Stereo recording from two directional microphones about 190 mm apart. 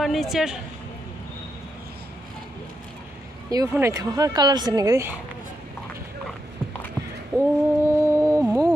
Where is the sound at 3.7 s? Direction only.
15° right (ahead or behind).